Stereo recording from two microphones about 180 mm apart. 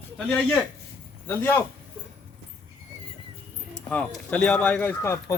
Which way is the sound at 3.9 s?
5° left (ahead or behind).